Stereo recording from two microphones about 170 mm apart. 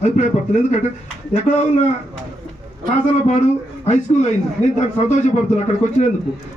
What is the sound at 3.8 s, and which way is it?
Speech, 45° left (ahead or behind).